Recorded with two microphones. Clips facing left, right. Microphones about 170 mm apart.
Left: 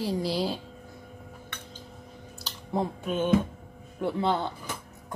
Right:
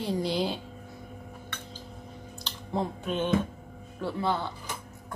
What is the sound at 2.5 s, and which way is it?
Speech, 5° left (ahead or behind).